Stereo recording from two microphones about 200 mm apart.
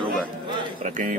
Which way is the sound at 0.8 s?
40° right (ahead or behind).